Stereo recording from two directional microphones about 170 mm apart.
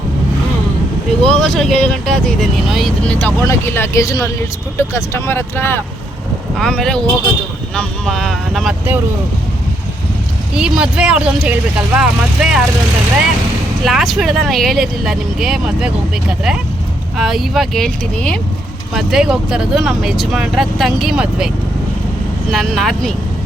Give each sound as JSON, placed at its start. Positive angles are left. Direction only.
{"t": 1.2, "sound": "speech", "side_deg": 5}
{"t": 10.5, "sound": "speech", "side_deg": -5}
{"t": 13.8, "sound": "speech", "side_deg": 0}
{"t": 17.2, "sound": "speech", "side_deg": 0}
{"t": 22.5, "sound": "speech", "side_deg": 0}